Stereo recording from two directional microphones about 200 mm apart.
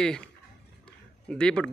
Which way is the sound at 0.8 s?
5° left (ahead or behind).